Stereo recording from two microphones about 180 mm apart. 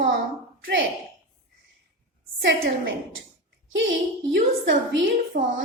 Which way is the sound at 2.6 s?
90° right.